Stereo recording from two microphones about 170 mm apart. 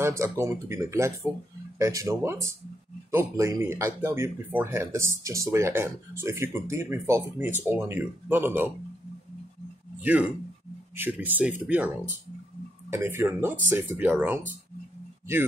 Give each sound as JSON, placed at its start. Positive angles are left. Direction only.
{"t": 0.0, "sound": "speech", "side_deg": -15}
{"t": 10.0, "sound": "speech", "side_deg": -10}